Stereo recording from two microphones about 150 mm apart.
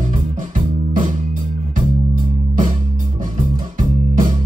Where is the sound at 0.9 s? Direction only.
60° right (ahead or behind).